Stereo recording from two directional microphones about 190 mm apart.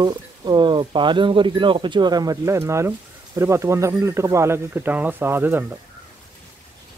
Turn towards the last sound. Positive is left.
turn(degrees=-10)  # may be behind; listen again after turning